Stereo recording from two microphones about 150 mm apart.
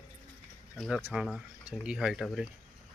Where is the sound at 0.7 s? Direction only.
Centre (ahead or behind).